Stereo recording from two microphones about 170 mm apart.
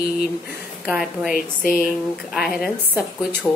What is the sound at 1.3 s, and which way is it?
Speech, 55° left (ahead or behind).